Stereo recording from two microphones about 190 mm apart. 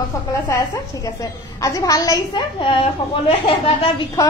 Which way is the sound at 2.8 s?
30° left (ahead or behind).